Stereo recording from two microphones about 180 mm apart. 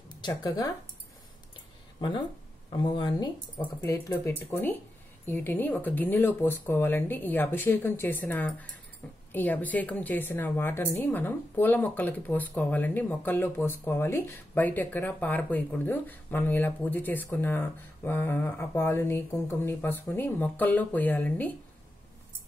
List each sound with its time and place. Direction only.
0.1 s speech: 25° left (ahead or behind)
2.0 s a woman's voice: 25° left (ahead or behind); by 21.5 s 10° left (ahead or behind)